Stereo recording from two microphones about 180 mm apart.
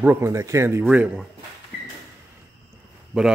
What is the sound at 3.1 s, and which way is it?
Speech, 5° right (ahead or behind).